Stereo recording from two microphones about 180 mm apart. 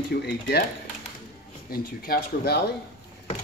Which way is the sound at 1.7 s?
55° left (ahead or behind).